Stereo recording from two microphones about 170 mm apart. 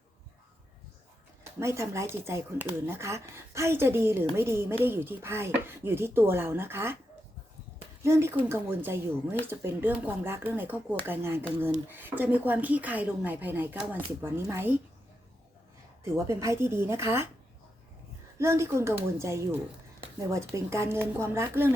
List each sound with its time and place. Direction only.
1.5 s speech: 15° right (ahead or behind)
8.0 s speech: 15° right (ahead or behind)
16.0 s speech: 15° right (ahead or behind)
18.3 s speech: 15° right (ahead or behind)